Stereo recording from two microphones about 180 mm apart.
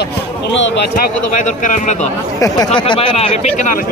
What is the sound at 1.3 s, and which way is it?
Speech, 45° left (ahead or behind).